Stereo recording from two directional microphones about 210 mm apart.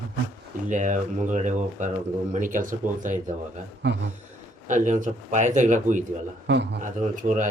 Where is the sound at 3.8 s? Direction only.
55° right (ahead or behind).